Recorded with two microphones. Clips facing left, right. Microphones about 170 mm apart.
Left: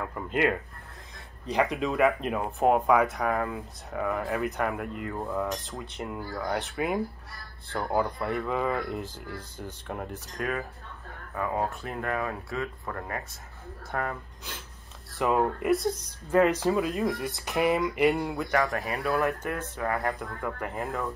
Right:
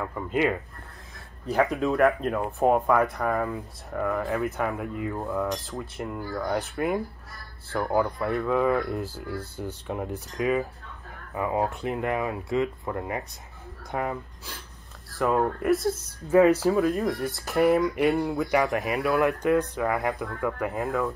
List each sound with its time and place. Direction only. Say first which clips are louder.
0.0 s speech: right 2 dB; centre (ahead or behind)
15.0 s speech: right 1 dB; centre (ahead or behind)
18.5 s speech: right 2 dB; 15° right (ahead or behind)